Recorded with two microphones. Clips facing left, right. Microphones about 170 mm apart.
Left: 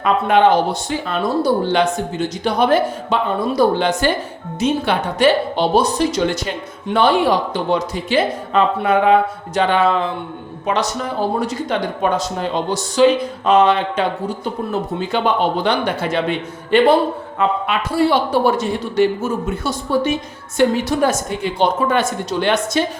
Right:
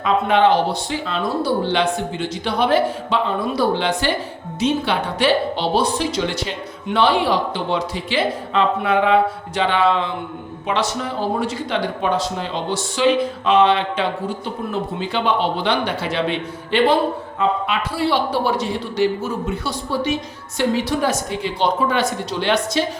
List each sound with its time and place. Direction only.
0.0 s speech: 50° left (ahead or behind)